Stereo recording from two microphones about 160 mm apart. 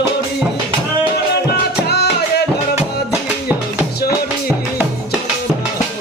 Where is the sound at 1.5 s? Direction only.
90° left.